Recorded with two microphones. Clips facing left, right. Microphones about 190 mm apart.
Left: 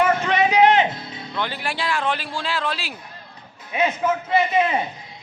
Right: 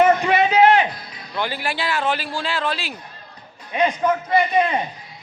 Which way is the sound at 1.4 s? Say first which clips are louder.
Right 2 dB; 5° right (ahead or behind).